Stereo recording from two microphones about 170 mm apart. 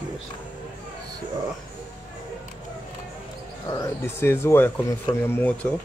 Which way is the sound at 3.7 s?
20° left (ahead or behind).